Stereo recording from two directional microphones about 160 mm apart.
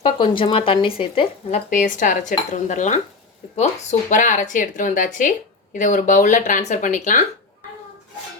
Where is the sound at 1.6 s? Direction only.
55° left (ahead or behind).